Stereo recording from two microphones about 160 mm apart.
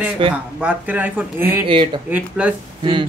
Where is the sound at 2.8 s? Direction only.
35° right (ahead or behind).